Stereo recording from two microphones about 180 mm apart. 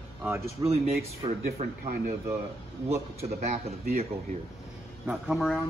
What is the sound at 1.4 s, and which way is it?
Speech, 50° right (ahead or behind).